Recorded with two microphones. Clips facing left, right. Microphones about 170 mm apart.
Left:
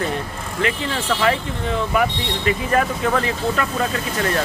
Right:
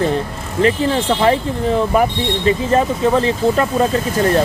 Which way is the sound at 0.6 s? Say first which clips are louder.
Right 8 dB; 30° right (ahead or behind).